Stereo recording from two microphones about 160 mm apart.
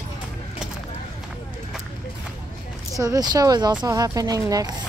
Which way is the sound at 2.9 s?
20° right (ahead or behind).